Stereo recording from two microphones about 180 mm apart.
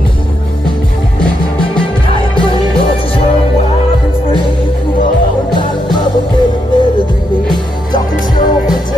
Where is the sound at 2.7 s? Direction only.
30° left (ahead or behind).